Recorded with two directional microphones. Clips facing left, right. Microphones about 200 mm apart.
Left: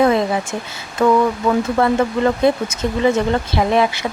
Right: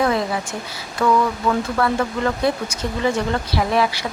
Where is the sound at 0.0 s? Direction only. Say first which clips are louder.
Left 5 dB; 25° left (ahead or behind).